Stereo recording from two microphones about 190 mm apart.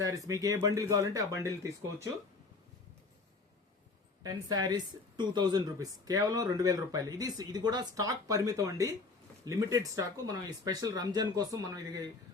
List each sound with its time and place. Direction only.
0.0 s speech: 15° right (ahead or behind)
4.2 s speech: 20° right (ahead or behind)